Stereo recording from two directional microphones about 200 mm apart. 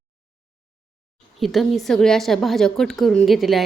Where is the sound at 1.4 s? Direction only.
Centre (ahead or behind).